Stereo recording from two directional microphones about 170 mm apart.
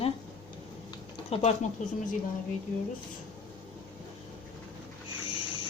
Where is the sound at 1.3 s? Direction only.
35° left (ahead or behind).